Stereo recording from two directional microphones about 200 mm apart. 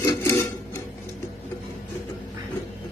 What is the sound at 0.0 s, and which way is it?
Filing, 15° left (ahead or behind).